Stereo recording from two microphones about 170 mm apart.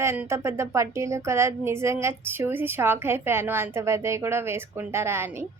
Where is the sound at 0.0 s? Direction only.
15° right (ahead or behind).